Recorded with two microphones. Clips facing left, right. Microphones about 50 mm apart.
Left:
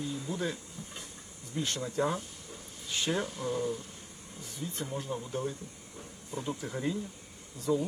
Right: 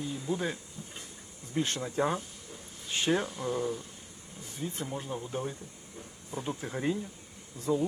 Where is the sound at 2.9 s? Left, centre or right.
Right.